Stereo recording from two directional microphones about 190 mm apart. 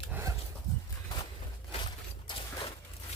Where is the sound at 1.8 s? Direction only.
25° left (ahead or behind).